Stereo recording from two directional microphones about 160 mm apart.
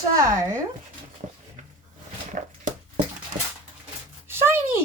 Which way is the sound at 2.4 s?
55° right (ahead or behind).